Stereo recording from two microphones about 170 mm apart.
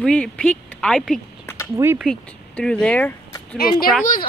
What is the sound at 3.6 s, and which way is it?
Speech, 60° left (ahead or behind).